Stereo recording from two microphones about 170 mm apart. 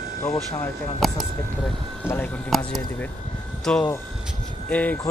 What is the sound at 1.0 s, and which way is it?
Speech, centre (ahead or behind).